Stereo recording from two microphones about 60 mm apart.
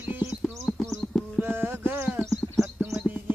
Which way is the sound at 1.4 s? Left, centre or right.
Right.